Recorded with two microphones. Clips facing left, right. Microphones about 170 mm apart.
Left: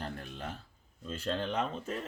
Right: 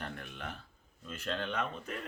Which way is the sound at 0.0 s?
35° left (ahead or behind).